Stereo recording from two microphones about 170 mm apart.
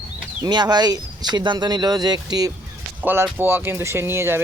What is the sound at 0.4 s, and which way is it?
Speech, 25° right (ahead or behind).